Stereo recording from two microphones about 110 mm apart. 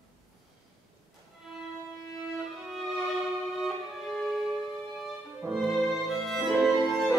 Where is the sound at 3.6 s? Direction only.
Centre (ahead or behind).